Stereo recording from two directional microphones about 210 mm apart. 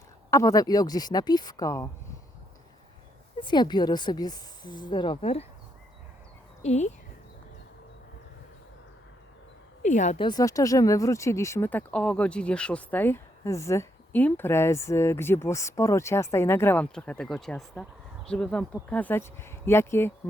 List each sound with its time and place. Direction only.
0.3 s speech: 15° left (ahead or behind)
3.4 s speech: 20° left (ahead or behind)
6.6 s speech: 30° left (ahead or behind)
9.8 s speech: 35° left (ahead or behind)
10.2 s speech: 20° left (ahead or behind)